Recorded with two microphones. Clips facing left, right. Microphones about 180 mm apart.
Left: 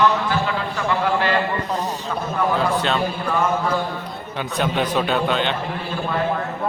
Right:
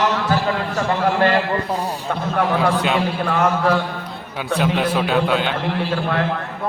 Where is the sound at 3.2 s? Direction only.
80° right.